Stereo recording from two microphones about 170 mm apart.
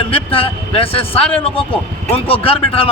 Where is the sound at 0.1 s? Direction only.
30° left (ahead or behind).